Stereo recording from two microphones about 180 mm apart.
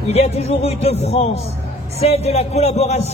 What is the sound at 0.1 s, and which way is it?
Speech, 35° left (ahead or behind).